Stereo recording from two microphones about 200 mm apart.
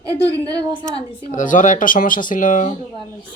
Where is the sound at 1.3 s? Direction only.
40° left (ahead or behind).